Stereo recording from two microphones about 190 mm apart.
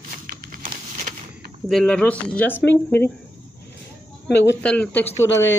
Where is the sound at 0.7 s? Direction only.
40° right (ahead or behind).